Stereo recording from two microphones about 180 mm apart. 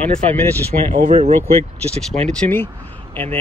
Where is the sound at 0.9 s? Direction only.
45° right (ahead or behind).